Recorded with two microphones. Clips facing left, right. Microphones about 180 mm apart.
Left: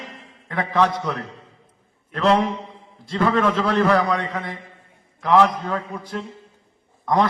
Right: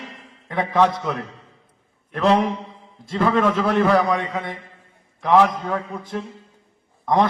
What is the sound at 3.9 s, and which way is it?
A man's voice, 25° right (ahead or behind).